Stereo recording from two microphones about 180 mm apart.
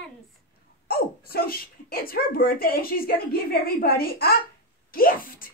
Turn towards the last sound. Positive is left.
turn(degrees=50)  # may be behind; listen again after turning